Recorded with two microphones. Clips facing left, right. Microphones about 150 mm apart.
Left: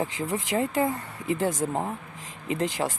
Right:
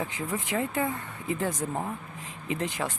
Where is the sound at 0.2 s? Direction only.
90° left.